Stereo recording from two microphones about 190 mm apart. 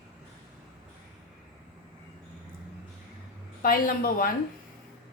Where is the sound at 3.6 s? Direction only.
50° left (ahead or behind).